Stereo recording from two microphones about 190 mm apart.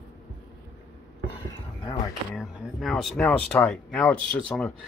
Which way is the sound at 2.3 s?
Centre (ahead or behind).